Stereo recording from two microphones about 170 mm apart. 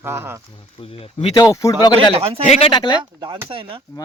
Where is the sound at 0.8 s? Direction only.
35° left (ahead or behind).